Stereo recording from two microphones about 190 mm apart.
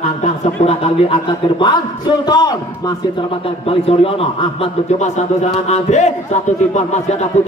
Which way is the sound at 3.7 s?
30° left (ahead or behind).